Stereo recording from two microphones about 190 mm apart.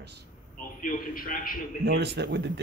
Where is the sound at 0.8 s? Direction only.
50° left (ahead or behind).